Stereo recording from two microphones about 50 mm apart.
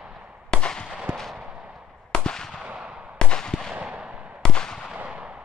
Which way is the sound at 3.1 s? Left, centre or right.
Centre.